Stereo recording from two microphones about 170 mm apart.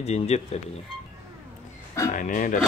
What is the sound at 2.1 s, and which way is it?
Speech, 50° left (ahead or behind).